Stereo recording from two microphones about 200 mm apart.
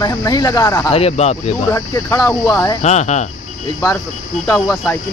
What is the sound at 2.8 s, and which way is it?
Speech, 35° left (ahead or behind).